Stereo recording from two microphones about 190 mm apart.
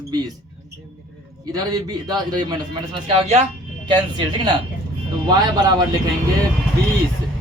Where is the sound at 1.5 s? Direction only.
20° right (ahead or behind); by 3.5 s 35° right (ahead or behind).